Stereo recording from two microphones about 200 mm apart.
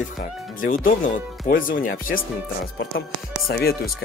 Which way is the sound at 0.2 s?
45° left (ahead or behind).